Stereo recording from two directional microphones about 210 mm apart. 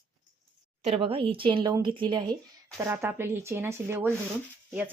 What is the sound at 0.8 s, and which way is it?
Speech, 30° right (ahead or behind).